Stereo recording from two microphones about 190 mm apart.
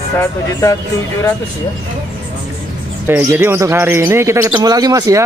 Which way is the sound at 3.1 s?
15° right (ahead or behind).